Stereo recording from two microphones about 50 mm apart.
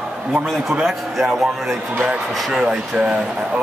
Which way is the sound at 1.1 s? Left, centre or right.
Centre.